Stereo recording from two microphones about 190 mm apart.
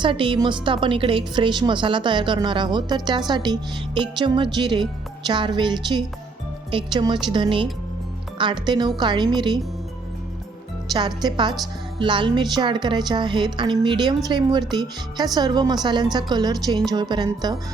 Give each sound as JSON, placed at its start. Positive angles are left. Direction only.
{"t": 0.0, "sound": "a woman's voice", "side_deg": -25}
{"t": 10.9, "sound": "a woman's voice", "side_deg": -25}